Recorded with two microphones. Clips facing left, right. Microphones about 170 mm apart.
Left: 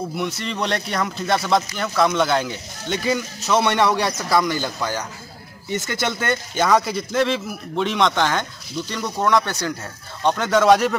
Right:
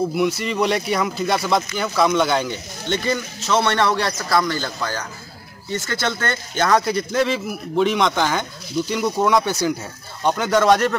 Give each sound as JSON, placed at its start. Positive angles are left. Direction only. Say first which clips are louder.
{"t": 0.4, "sound": "a man's voice", "louder": "right 4 dB", "side_deg": -5}